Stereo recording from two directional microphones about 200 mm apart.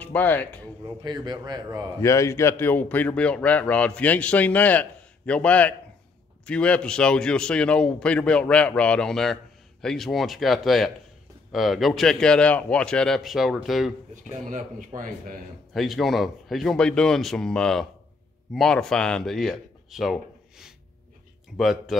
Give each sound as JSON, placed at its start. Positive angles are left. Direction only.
{"t": 0.0, "sound": "speech", "side_deg": 10}
{"t": 1.0, "sound": "a man's voice", "side_deg": -20}
{"t": 2.0, "sound": "a man's voice", "side_deg": 15}
{"t": 14.1, "sound": "a man's voice", "side_deg": -40}
{"t": 14.9, "sound": "a man's voice", "side_deg": -25}
{"t": 15.7, "sound": "a man's voice", "side_deg": 0}